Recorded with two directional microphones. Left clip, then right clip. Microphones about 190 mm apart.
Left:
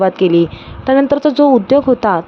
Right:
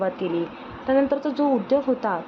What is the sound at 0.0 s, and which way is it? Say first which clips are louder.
A woman's voice: left 13 dB; 45° left (ahead or behind).